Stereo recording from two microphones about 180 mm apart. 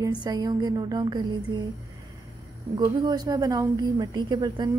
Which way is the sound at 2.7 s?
25° right (ahead or behind).